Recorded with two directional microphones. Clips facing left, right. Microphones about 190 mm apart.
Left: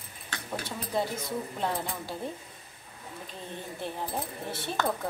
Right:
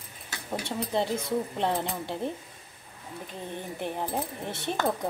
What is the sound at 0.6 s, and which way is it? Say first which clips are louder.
Speech: right 3 dB; 25° right (ahead or behind).